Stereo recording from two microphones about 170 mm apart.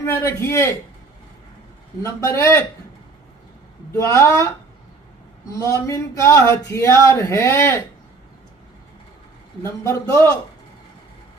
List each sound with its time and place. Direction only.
0.0 s speech: 15° left (ahead or behind)
2.0 s speech: 15° left (ahead or behind)
3.9 s speech: 15° left (ahead or behind)
5.5 s speech: 20° left (ahead or behind)
9.8 s speech: 20° left (ahead or behind)